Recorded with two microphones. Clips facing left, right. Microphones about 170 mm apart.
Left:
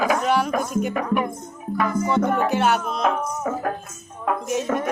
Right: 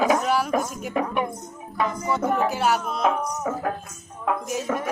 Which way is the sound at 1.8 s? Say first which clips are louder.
Left 3 dB; 20° right (ahead or behind).